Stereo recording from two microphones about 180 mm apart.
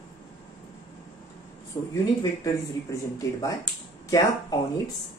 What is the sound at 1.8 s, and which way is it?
Speech, 20° left (ahead or behind).